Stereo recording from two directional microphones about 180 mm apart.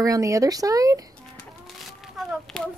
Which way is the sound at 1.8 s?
Centre (ahead or behind).